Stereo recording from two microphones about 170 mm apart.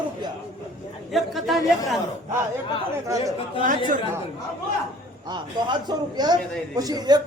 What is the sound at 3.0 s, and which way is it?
Speech, 20° right (ahead or behind).